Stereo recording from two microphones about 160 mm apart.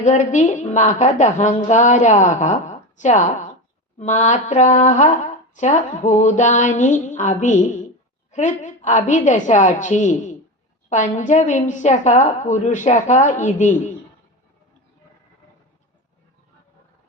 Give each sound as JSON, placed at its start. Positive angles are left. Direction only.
{"t": 0.0, "sound": "speech", "side_deg": 50}